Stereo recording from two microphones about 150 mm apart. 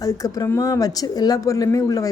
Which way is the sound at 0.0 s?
25° left (ahead or behind).